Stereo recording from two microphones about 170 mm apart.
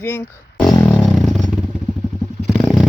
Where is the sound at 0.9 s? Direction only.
Centre (ahead or behind).